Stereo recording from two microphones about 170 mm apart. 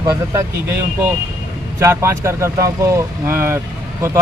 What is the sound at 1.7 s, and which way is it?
Speech, 15° right (ahead or behind).